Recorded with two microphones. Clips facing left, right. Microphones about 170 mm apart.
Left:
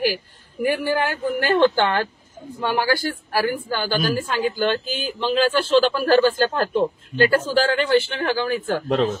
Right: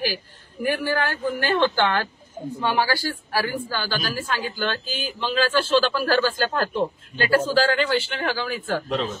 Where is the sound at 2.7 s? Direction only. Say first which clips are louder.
Left 5 dB; 15° left (ahead or behind).